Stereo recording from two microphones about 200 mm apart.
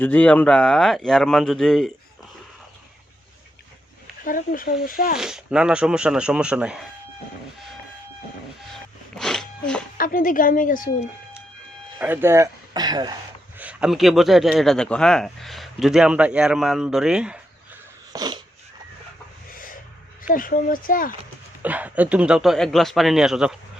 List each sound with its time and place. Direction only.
0.0 s speech: 10° left (ahead or behind)
4.2 s speech: 45° left (ahead or behind)
5.1 s speech: 5° right (ahead or behind)
8.7 s sneeze: centre (ahead or behind)
10.0 s speech: 45° left (ahead or behind)
11.9 s speech: 10° right (ahead or behind)
13.6 s speech: 5° right (ahead or behind)
18.1 s dog: 20° right (ahead or behind)
19.5 s a sound: 45° left (ahead or behind)
20.2 s speech: 45° left (ahead or behind)
21.6 s speech: 10° right (ahead or behind)